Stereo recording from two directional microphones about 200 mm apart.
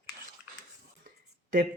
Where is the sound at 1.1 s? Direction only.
45° right (ahead or behind).